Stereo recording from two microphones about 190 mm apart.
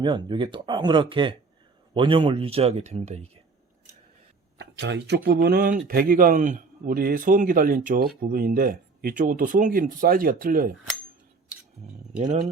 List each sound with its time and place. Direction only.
0.0 s speech: 25° right (ahead or behind)
4.5 s speech: 65° right (ahead or behind); by 10.7 s 50° right (ahead or behind)